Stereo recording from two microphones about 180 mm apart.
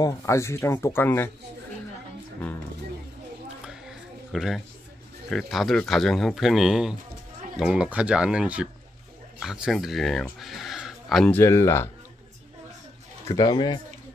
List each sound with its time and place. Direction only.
0.0 s speech: 15° left (ahead or behind)
4.3 s speech: centre (ahead or behind)
11.3 s speech: 15° left (ahead or behind)
13.3 s speech: 20° left (ahead or behind)